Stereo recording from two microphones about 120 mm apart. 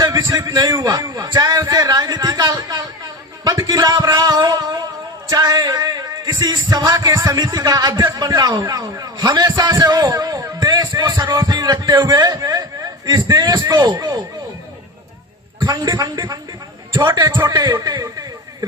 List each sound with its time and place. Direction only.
0.0 s a man's voice: 30° right (ahead or behind)
3.4 s a sound: 30° right (ahead or behind)
5.3 s a man's voice: 35° right (ahead or behind)
15.6 s a man's voice: 40° right (ahead or behind)